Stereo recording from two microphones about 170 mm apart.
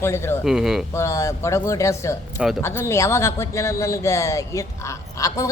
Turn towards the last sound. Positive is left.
turn(degrees=20)  # may be behind; listen again after turning